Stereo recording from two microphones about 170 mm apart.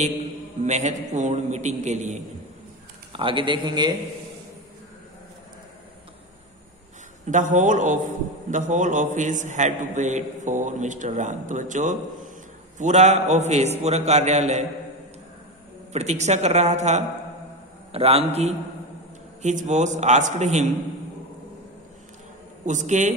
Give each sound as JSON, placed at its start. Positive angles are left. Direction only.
{"t": 0.7, "sound": "a man's voice", "side_deg": -45}
{"t": 3.1, "sound": "a man's voice", "side_deg": -30}
{"t": 7.2, "sound": "a man's voice", "side_deg": -50}
{"t": 15.9, "sound": "a man's voice", "side_deg": -40}
{"t": 22.7, "sound": "a man's voice", "side_deg": -45}